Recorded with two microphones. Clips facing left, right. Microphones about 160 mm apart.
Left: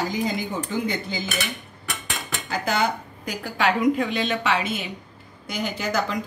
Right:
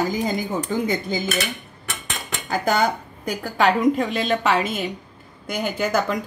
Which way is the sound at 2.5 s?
45° right (ahead or behind).